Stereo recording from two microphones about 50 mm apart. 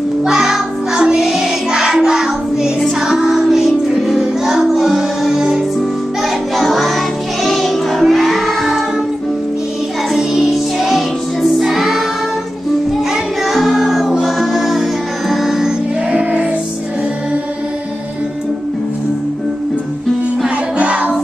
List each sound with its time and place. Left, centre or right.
0.2 s music: centre
10.1 s music: centre
13.1 s music: centre
16.1 s music: right
20.4 s music: right